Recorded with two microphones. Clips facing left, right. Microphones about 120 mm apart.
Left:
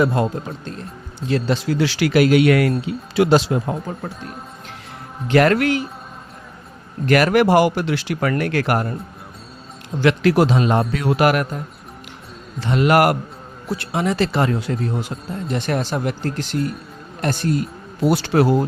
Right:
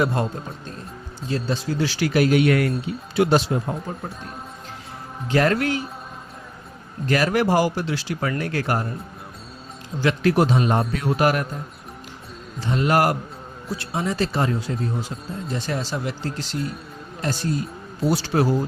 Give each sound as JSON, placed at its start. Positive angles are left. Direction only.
{"t": 1.3, "sound": "a man's voice", "side_deg": 75}
{"t": 5.3, "sound": "speech", "side_deg": 70}
{"t": 7.0, "sound": "speech", "side_deg": 70}
{"t": 10.0, "sound": "a man's voice", "side_deg": 80}